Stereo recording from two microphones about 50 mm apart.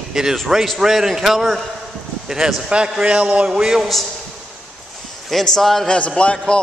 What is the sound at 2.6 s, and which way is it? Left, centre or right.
Speech, centre.